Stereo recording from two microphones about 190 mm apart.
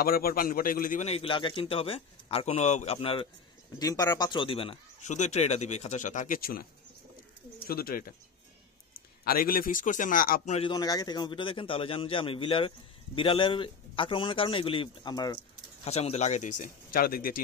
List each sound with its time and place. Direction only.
0.0 s a man's voice: 50° left (ahead or behind)
9.2 s a man's voice: 50° left (ahead or behind)
10.7 s a man's voice: 20° left (ahead or behind)
15.8 s a man's voice: 35° left (ahead or behind); by 17.4 s 50° left (ahead or behind)